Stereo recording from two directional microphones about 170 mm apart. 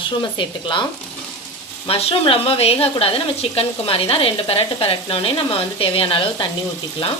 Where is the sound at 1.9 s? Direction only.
35° left (ahead or behind).